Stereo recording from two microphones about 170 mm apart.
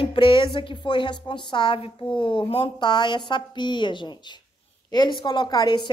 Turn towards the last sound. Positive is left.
turn(degrees=25)  # may be behind; listen again after turning